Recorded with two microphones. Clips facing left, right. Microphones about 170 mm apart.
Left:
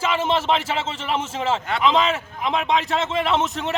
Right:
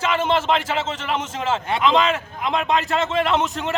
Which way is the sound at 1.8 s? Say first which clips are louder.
Right 1 dB; centre (ahead or behind).